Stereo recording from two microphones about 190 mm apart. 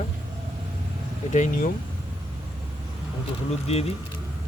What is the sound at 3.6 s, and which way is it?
Speech, 30° left (ahead or behind).